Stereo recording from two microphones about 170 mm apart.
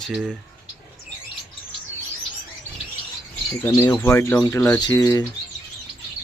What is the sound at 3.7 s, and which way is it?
Speech, 15° left (ahead or behind).